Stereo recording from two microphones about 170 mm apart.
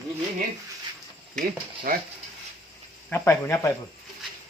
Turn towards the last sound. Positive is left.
turn(degrees=15)  # may be behind; listen again after turning